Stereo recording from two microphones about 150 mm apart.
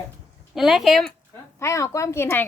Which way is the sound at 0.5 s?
Centre (ahead or behind).